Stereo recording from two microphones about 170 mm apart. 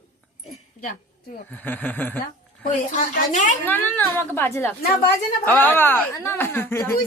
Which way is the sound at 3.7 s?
10° left (ahead or behind).